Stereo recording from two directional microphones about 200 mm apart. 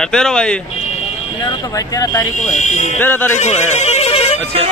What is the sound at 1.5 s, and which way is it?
Speech, 15° left (ahead or behind).